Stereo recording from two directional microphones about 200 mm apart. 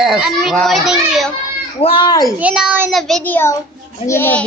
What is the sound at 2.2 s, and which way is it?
A child's voice, 5° right (ahead or behind).